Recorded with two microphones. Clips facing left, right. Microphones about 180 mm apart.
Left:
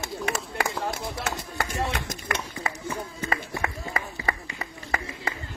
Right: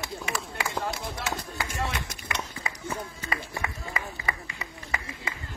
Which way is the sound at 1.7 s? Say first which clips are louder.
Left 3 dB; 45° left (ahead or behind).